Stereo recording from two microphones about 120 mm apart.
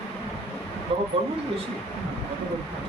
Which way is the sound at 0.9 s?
50° right (ahead or behind).